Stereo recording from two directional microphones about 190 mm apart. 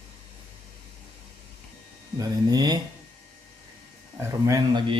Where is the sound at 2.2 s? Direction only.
20° right (ahead or behind).